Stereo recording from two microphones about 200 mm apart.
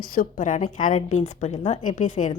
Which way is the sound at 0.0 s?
45° left (ahead or behind).